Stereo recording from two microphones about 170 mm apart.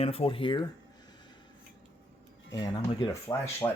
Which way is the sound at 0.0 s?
35° left (ahead or behind).